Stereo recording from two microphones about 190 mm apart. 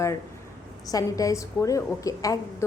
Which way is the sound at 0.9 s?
20° left (ahead or behind).